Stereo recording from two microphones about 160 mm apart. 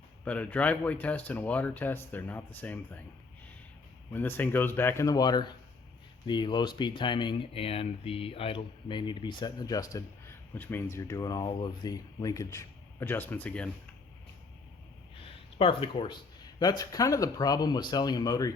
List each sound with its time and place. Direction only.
0.3 s speech: 10° left (ahead or behind)
4.1 s speech: 10° left (ahead or behind)
15.2 s a sound: 35° left (ahead or behind)
16.6 s speech: 25° left (ahead or behind)